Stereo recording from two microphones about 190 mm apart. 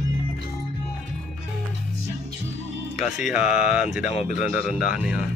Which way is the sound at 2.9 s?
Centre (ahead or behind).